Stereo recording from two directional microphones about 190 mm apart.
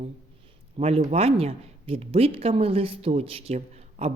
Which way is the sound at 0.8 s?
30° right (ahead or behind).